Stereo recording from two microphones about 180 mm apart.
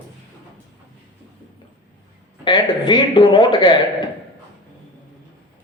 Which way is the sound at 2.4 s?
25° left (ahead or behind).